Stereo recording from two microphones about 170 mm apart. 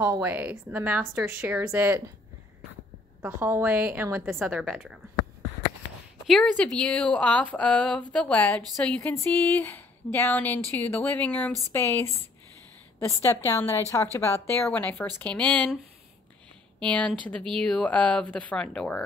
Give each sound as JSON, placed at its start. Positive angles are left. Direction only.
{"t": 0.0, "sound": "a woman's voice", "side_deg": -15}
{"t": 3.2, "sound": "a woman's voice", "side_deg": -10}
{"t": 6.2, "sound": "a woman's voice", "side_deg": 5}
{"t": 13.2, "sound": "a woman's voice", "side_deg": 15}
{"t": 16.8, "sound": "a woman's voice", "side_deg": 5}